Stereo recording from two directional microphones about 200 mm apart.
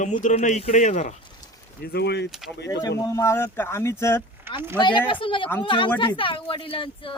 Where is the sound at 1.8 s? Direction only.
55° left (ahead or behind).